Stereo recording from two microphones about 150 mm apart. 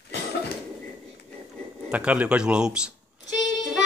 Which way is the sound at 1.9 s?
10° right (ahead or behind).